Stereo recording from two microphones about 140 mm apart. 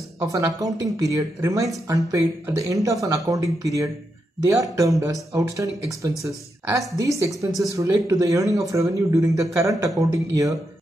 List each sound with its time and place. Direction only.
0.2 s speech: 25° right (ahead or behind)